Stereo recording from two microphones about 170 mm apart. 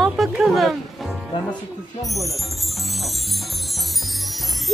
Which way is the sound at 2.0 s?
Centre (ahead or behind).